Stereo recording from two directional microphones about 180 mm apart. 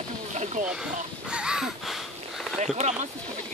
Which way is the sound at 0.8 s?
5° right (ahead or behind).